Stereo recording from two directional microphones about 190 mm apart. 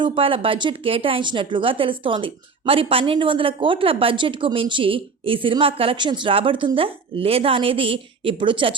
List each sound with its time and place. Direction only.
0.0 s speech: 25° right (ahead or behind)